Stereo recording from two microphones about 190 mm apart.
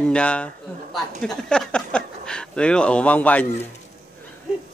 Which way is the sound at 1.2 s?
5° left (ahead or behind).